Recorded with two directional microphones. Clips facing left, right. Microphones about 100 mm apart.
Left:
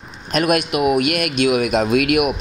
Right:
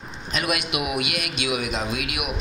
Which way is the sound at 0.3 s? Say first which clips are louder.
Left 9 dB; 50° left (ahead or behind).